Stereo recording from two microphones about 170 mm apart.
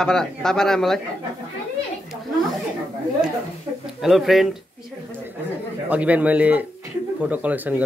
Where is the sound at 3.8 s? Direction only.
Centre (ahead or behind).